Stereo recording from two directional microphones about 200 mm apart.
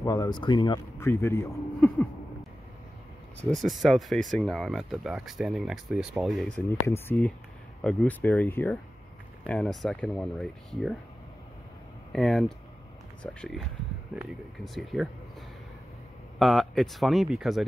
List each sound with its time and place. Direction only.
0.0 s speech: 15° left (ahead or behind)
3.3 s speech: centre (ahead or behind)
12.1 s speech: centre (ahead or behind)
16.3 s speech: centre (ahead or behind)